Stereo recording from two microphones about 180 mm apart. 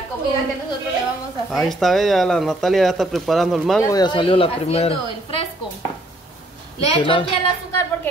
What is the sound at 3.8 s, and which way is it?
Speech, 20° left (ahead or behind).